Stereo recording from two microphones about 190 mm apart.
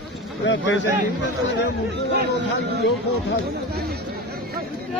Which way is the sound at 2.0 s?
65° right (ahead or behind).